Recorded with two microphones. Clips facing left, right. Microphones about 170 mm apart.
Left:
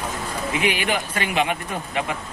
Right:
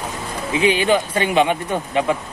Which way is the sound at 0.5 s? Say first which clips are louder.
Right 8 dB; 30° right (ahead or behind).